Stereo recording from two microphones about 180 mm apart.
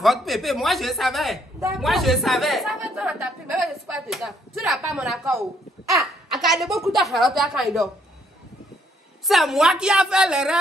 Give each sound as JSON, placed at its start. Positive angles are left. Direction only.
{"t": 0.0, "sound": "speech", "side_deg": 0}
{"t": 1.7, "sound": "a sound", "side_deg": 0}
{"t": 4.8, "sound": "a woman's voice", "side_deg": 0}
{"t": 9.3, "sound": "speech", "side_deg": 0}